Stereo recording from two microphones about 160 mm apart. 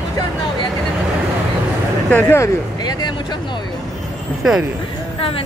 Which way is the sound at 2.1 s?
15° left (ahead or behind).